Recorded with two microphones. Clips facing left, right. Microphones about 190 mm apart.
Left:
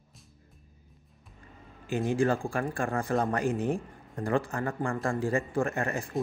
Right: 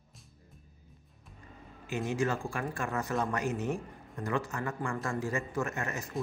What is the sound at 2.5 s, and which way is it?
A man's voice, 30° left (ahead or behind).